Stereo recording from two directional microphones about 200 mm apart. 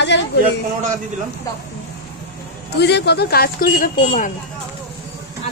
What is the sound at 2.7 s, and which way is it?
Speech, 55° left (ahead or behind).